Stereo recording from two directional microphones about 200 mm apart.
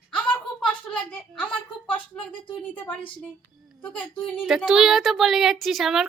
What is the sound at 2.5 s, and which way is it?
Speech, 25° left (ahead or behind).